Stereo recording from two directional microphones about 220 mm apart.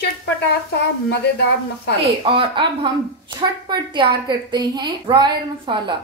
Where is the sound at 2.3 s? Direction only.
20° right (ahead or behind).